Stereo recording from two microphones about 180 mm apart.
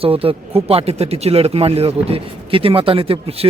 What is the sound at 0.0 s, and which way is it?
Speech, 30° right (ahead or behind).